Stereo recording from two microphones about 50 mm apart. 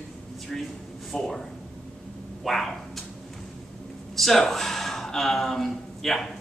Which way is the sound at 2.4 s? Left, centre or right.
Centre.